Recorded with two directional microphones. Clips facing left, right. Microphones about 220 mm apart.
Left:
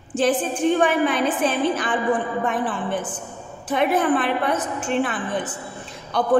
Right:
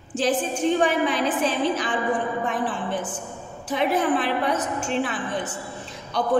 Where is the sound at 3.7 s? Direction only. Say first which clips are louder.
Left 2 dB; 55° left (ahead or behind).